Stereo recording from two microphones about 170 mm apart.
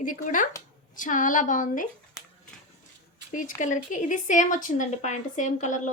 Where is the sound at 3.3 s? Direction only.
50° left (ahead or behind).